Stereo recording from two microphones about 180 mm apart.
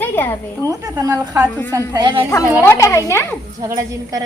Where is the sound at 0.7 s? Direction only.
20° right (ahead or behind).